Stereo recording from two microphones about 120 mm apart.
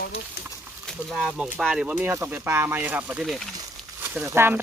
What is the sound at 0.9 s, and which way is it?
Speech, centre (ahead or behind).